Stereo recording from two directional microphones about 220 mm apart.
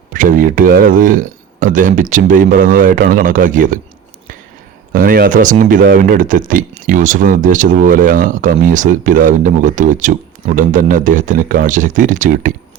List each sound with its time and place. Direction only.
0.1 s speech: 40° right (ahead or behind)
4.9 s speech: 40° right (ahead or behind)